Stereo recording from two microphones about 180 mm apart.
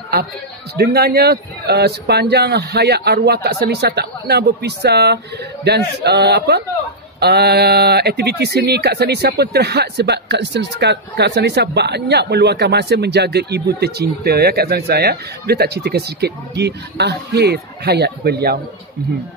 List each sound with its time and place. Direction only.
0.7 s speech: 60° right (ahead or behind)